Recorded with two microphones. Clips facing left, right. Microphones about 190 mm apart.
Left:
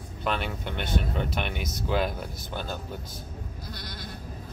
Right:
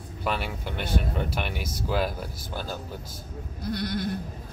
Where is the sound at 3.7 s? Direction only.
55° right (ahead or behind).